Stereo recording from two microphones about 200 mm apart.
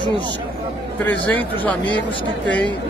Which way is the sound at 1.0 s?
10° left (ahead or behind).